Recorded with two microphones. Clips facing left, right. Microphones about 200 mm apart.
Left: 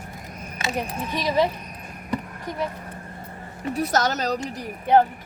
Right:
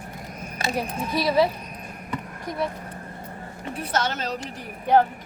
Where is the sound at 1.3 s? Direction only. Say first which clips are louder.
Right 1 dB; 5° right (ahead or behind).